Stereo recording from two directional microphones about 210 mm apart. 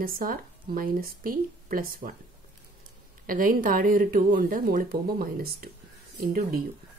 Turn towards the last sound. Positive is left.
turn(degrees=-40)  # may be behind; listen again after turning